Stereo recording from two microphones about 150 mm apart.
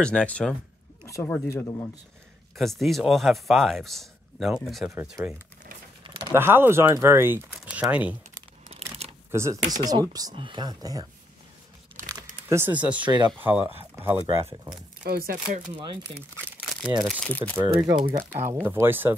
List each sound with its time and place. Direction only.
0.0 s speech: 5° left (ahead or behind)
2.5 s speech: centre (ahead or behind)
6.0 s a sound: 30° right (ahead or behind)
6.3 s speech: 15° right (ahead or behind)
9.3 s speech: 20° right (ahead or behind)
12.4 s speech: 15° right (ahead or behind)
15.0 s speech: 90° right
16.2 s crumpling: 15° right (ahead or behind)
17.0 s speech: 5° left (ahead or behind)
17.6 s speech: 20° right (ahead or behind)